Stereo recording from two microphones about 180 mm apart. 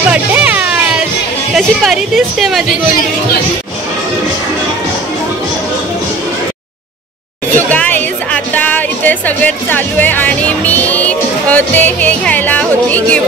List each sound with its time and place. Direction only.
0.1 s music: 10° right (ahead or behind)
1.5 s a woman's voice: centre (ahead or behind)
7.5 s speech: 10° left (ahead or behind)